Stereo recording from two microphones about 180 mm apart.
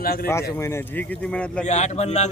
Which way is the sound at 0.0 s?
55° left (ahead or behind).